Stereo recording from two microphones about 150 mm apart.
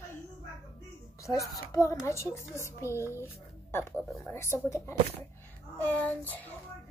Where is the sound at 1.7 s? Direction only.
20° left (ahead or behind).